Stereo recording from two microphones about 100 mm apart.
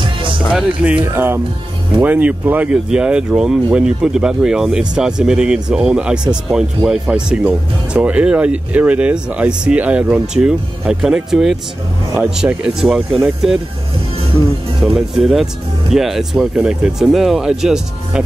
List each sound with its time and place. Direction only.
0.0 s music: 55° right (ahead or behind)
0.5 s speech: 10° right (ahead or behind)
1.1 s speech: 25° right (ahead or behind); by 13.6 s 5° right (ahead or behind)
14.8 s speech: 5° right (ahead or behind)